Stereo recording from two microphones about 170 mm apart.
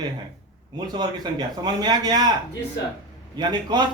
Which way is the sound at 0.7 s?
25° right (ahead or behind).